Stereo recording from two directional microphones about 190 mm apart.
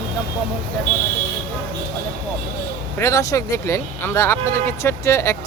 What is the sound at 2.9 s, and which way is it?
Speech, 15° left (ahead or behind).